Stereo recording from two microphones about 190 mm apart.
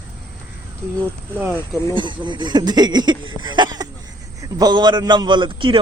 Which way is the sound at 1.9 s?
25° right (ahead or behind).